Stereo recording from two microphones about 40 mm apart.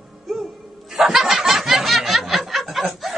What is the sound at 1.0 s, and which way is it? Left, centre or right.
Snicker, centre.